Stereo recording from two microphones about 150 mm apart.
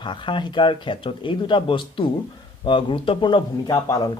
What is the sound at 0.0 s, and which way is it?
Speech, 30° left (ahead or behind).